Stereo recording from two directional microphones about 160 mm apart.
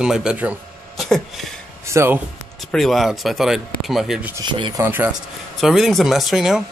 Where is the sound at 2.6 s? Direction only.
Centre (ahead or behind).